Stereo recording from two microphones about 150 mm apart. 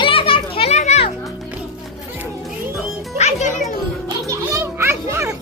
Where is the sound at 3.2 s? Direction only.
50° left (ahead or behind).